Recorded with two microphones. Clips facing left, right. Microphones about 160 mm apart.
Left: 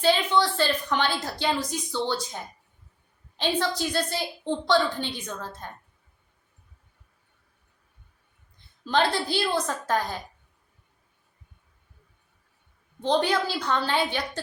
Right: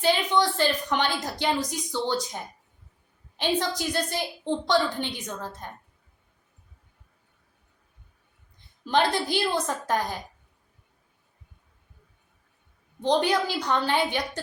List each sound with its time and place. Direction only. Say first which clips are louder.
0.0 s a woman's voice: left 1 dB; 15° right (ahead or behind)
8.8 s a woman's voice: even; 15° right (ahead or behind)
13.2 s a woman's voice: right 1 dB; 15° right (ahead or behind)